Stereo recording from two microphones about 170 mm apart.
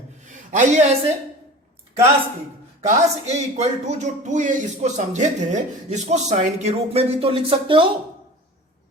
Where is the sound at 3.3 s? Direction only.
40° right (ahead or behind).